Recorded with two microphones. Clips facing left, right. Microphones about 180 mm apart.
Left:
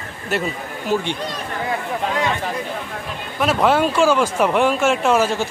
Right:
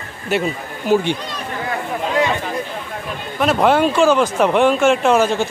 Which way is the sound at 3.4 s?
Centre (ahead or behind).